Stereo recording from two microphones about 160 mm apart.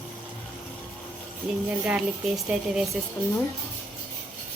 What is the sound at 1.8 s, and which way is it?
A woman's voice, 5° right (ahead or behind).